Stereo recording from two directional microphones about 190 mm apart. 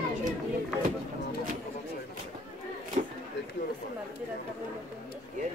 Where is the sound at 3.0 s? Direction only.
40° right (ahead or behind).